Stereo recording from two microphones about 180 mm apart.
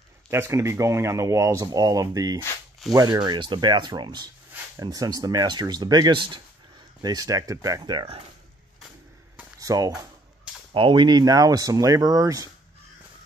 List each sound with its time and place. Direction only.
0.3 s speech: 15° right (ahead or behind)
9.4 s a sound: 20° right (ahead or behind)
10.7 s speech: 30° right (ahead or behind)